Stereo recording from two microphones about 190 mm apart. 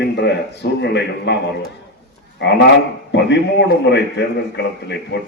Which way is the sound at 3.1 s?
65° left (ahead or behind).